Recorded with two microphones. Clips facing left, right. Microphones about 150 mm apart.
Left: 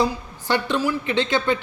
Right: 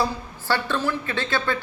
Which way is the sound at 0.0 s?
20° left (ahead or behind).